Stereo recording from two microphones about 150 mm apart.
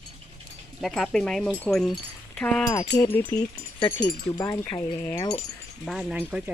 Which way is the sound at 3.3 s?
15° left (ahead or behind).